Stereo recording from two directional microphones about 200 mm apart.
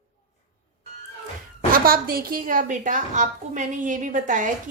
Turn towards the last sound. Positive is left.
turn(degrees=-40)  # may be behind; listen again after turning